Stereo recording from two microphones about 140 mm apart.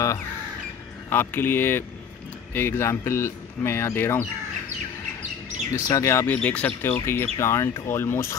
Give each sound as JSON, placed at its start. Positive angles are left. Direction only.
{"t": 1.1, "sound": "speech", "side_deg": 15}
{"t": 5.7, "sound": "speech", "side_deg": 20}